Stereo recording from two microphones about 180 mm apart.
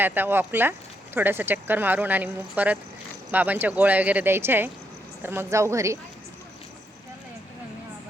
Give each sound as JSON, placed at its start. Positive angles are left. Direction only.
{"t": 0.0, "sound": "speech", "side_deg": -10}